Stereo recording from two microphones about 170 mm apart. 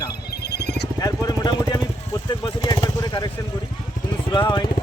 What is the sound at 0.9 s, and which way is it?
Vehicle, 20° left (ahead or behind).